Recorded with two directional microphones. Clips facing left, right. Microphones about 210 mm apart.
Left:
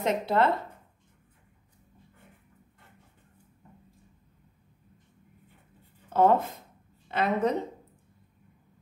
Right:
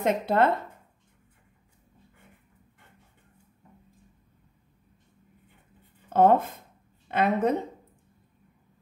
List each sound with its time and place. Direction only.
0.0 s a woman's voice: 50° right (ahead or behind)
6.1 s a woman's voice: 55° right (ahead or behind)